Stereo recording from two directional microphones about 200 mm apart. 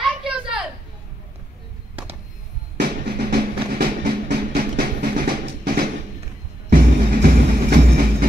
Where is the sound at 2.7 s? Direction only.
50° right (ahead or behind).